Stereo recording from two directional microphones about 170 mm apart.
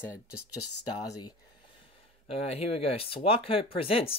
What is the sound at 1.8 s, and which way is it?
Speech, 35° left (ahead or behind).